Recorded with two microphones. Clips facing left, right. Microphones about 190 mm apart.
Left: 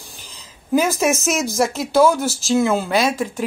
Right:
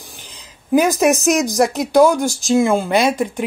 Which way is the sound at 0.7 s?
15° right (ahead or behind).